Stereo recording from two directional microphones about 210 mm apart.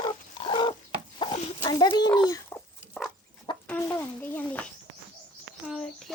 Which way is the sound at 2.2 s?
15° left (ahead or behind).